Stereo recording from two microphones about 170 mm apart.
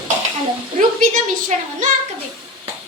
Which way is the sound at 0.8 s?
45° right (ahead or behind).